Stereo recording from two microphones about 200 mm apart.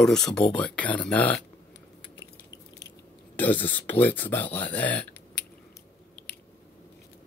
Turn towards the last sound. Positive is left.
turn(degrees=5)  # may be behind; listen again after turning